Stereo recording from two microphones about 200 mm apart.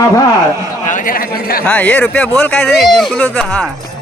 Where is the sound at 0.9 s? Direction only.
40° left (ahead or behind).